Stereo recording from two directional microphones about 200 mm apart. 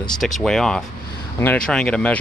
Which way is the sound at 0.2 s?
Centre (ahead or behind).